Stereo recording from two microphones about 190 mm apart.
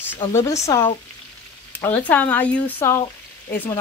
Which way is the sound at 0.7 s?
20° left (ahead or behind).